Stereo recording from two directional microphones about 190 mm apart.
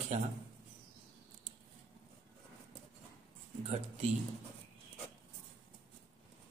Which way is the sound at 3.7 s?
35° right (ahead or behind).